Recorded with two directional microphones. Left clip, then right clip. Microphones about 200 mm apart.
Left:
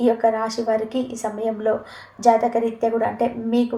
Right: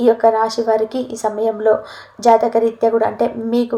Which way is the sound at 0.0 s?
25° right (ahead or behind).